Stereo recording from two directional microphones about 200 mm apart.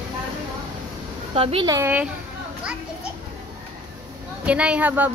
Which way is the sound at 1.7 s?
10° right (ahead or behind).